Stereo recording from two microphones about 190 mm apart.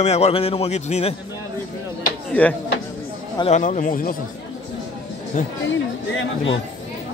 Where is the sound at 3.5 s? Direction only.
40° left (ahead or behind).